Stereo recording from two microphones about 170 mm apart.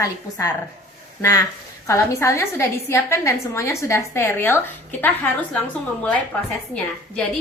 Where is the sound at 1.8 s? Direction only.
15° left (ahead or behind).